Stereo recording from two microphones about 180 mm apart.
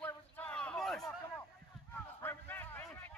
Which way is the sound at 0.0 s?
10° left (ahead or behind).